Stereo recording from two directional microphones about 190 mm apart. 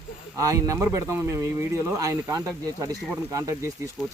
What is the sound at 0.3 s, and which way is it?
Speech, 15° right (ahead or behind).